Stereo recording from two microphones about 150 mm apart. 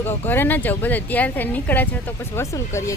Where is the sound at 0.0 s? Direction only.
15° left (ahead or behind).